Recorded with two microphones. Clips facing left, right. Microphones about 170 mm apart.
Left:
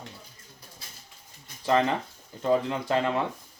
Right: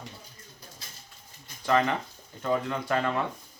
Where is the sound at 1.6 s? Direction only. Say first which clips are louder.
Left 1 dB; 30° left (ahead or behind).